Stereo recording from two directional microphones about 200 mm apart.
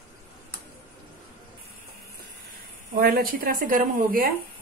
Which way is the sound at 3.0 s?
45° right (ahead or behind).